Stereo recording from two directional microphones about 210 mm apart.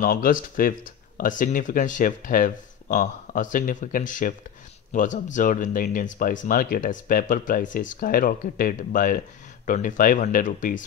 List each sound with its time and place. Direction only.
0.0 s speech: 40° left (ahead or behind)